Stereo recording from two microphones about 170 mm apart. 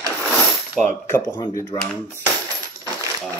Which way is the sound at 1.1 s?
25° left (ahead or behind).